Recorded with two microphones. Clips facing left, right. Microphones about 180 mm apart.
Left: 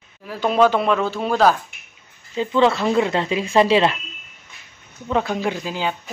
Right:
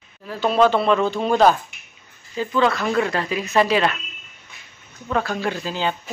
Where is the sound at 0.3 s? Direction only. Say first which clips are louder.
Even; 10° left (ahead or behind).